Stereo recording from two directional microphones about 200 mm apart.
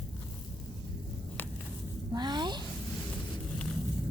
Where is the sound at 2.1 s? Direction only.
20° right (ahead or behind).